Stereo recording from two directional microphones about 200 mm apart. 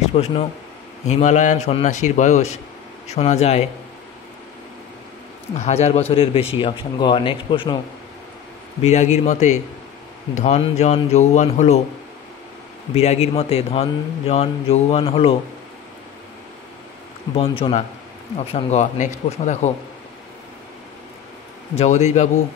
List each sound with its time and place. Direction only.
0.1 s a man's voice: 30° left (ahead or behind)
5.6 s a man's voice: 35° left (ahead or behind)
8.8 s a man's voice: 35° left (ahead or behind)
12.9 s a man's voice: 35° left (ahead or behind)
17.4 s a man's voice: 30° left (ahead or behind)
21.7 s a man's voice: 35° left (ahead or behind)